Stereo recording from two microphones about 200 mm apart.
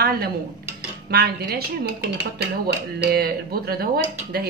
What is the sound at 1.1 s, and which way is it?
Speech, 50° right (ahead or behind).